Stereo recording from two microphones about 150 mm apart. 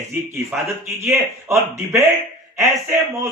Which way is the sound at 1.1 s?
20° right (ahead or behind).